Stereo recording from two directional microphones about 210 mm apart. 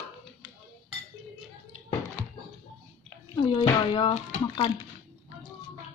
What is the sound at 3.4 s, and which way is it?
Speech, 20° left (ahead or behind).